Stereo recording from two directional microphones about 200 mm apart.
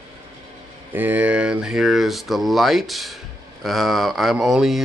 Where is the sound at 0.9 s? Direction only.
10° right (ahead or behind).